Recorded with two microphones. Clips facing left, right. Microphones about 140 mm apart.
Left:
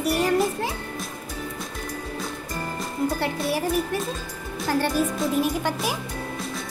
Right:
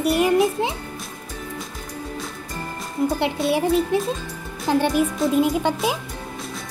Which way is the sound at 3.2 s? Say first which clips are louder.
Right 4 dB; 20° right (ahead or behind).